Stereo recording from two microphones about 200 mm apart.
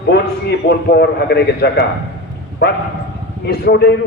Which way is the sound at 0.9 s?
55° left (ahead or behind).